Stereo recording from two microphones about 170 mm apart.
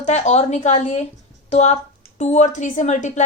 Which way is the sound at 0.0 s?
45° left (ahead or behind).